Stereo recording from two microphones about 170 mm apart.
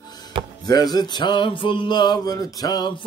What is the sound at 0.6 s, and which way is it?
Music, 25° left (ahead or behind).